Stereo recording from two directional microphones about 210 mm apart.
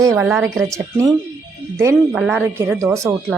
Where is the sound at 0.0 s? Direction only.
15° right (ahead or behind).